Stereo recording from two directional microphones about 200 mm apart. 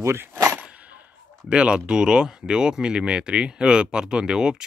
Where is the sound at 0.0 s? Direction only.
10° right (ahead or behind).